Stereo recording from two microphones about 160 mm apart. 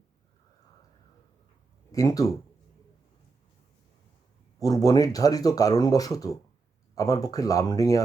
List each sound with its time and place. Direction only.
1.9 s speech: 20° left (ahead or behind)
4.6 s speech: 20° left (ahead or behind)